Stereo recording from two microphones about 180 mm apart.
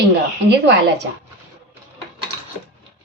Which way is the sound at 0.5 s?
70° right (ahead or behind).